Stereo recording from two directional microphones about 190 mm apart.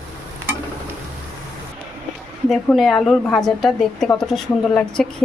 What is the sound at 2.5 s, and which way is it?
A woman's voice, centre (ahead or behind).